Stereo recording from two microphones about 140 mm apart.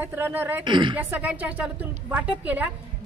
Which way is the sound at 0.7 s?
35° right (ahead or behind).